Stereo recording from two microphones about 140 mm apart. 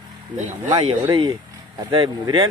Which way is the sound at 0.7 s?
40° right (ahead or behind).